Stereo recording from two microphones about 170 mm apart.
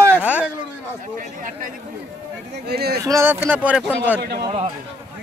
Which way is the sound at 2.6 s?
70° right (ahead or behind).